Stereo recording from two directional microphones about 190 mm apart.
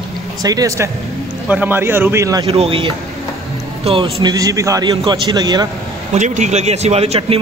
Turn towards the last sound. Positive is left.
turn(degrees=-30)  # may be behind; listen again after turning